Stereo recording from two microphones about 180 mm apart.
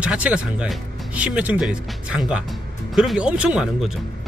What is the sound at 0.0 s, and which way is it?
Speech, 5° right (ahead or behind).